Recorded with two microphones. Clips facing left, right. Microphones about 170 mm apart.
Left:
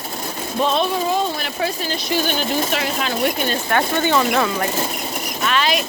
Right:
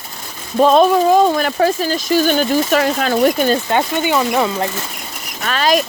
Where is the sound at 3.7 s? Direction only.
15° right (ahead or behind).